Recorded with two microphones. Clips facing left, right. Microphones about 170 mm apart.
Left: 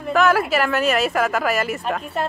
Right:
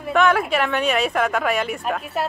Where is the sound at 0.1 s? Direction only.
Centre (ahead or behind).